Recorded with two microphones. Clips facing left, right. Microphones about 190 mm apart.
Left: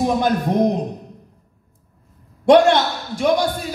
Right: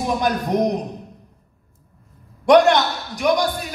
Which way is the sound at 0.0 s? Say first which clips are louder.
Left 3 dB; 30° left (ahead or behind).